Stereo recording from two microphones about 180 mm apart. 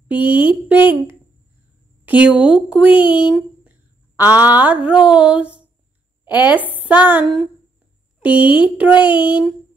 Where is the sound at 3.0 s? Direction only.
25° left (ahead or behind).